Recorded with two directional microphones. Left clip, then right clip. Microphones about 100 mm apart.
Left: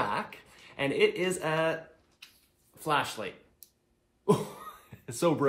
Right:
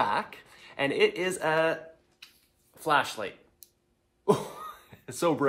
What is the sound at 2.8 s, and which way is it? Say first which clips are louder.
Speech: right 3 dB; 40° right (ahead or behind).